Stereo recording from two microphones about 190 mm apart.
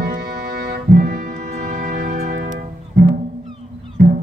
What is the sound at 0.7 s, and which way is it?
Music, 50° right (ahead or behind).